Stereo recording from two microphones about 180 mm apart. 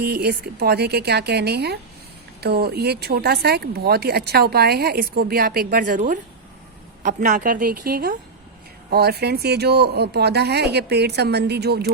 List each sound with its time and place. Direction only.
0.0 s a woman's voice: 65° right (ahead or behind)